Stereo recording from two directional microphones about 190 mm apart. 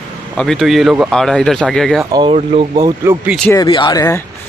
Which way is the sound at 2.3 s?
30° right (ahead or behind).